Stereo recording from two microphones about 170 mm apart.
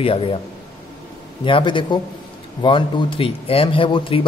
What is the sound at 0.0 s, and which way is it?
Speech, 35° left (ahead or behind).